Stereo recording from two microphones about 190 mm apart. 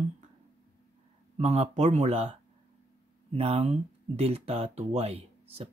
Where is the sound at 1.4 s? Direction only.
35° right (ahead or behind).